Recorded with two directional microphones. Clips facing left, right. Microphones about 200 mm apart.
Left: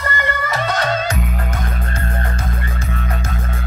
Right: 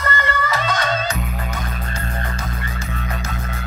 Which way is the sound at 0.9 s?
45° left (ahead or behind).